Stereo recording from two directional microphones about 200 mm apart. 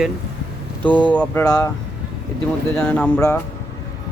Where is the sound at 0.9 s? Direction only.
5° left (ahead or behind).